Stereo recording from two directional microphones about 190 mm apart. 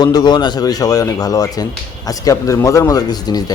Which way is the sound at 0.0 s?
20° left (ahead or behind).